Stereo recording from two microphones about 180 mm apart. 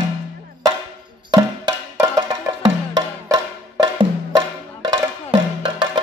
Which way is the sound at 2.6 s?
20° right (ahead or behind).